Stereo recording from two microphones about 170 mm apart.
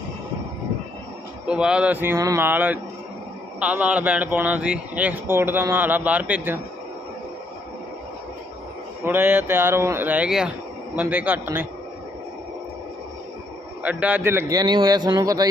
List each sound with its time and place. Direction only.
1.5 s speech: 5° right (ahead or behind)
9.0 s speech: 15° right (ahead or behind)
13.8 s a man's voice: 10° right (ahead or behind)